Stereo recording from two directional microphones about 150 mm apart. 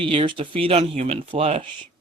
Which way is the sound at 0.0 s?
35° right (ahead or behind).